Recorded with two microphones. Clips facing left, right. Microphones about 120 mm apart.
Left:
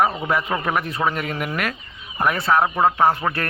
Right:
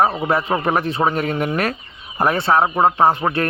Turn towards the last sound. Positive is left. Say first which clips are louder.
# right 3 dB
turn(degrees=-20)  # may be behind; listen again after turning